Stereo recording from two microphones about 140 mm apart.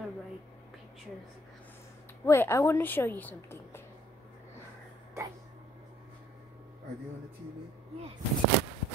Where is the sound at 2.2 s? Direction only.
20° left (ahead or behind).